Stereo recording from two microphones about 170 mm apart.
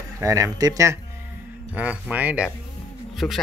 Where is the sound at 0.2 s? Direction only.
20° right (ahead or behind).